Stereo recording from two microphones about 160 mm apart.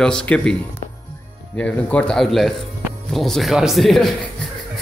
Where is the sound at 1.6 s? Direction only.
10° left (ahead or behind).